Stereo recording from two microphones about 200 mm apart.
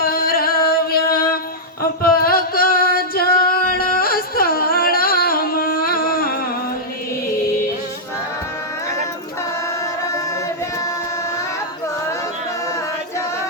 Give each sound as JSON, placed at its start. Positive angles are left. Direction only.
{"t": 0.0, "sound": "music", "side_deg": 50}